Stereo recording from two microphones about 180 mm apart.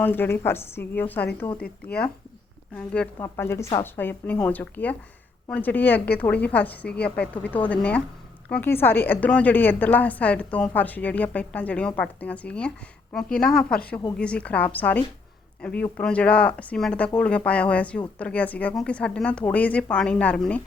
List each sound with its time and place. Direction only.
0.0 s a woman's voice: 10° left (ahead or behind)
1.5 s speech: 60° left (ahead or behind)
2.7 s a woman's voice: 5° left (ahead or behind)